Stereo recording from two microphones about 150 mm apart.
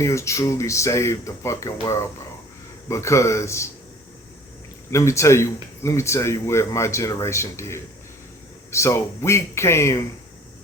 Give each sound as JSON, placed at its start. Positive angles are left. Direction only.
{"t": 0.0, "sound": "speech", "side_deg": 20}
{"t": 4.9, "sound": "speech", "side_deg": 20}